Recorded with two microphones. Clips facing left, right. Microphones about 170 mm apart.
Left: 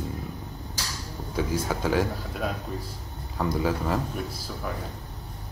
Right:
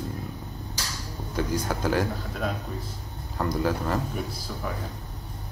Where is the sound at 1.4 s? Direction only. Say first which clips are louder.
Even; centre (ahead or behind).